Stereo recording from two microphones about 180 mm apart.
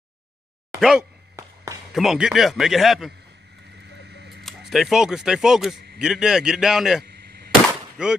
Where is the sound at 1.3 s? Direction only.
15° right (ahead or behind).